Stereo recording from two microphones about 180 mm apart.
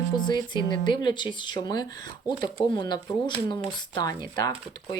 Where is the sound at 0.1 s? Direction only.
25° left (ahead or behind).